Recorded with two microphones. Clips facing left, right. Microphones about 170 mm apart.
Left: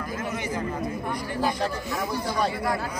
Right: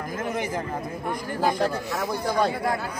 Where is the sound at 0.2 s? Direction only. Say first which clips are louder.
Right 3 dB; 50° right (ahead or behind).